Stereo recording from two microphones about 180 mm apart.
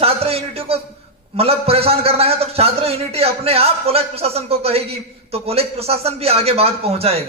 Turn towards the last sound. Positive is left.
turn(degrees=-35)  # may be behind; listen again after turning